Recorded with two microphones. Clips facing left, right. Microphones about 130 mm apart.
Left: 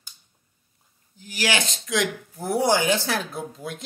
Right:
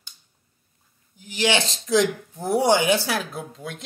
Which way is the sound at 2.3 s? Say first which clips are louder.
Right 2 dB; 20° right (ahead or behind).